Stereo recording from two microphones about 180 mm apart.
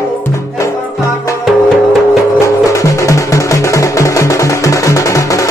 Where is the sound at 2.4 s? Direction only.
15° left (ahead or behind).